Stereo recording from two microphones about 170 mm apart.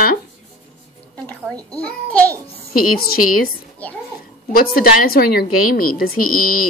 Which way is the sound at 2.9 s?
60° left (ahead or behind).